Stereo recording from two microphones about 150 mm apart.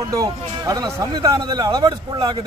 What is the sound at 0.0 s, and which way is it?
A man's voice, 25° right (ahead or behind).